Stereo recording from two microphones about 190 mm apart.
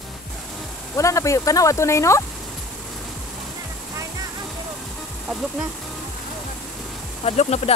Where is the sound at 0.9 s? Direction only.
15° left (ahead or behind).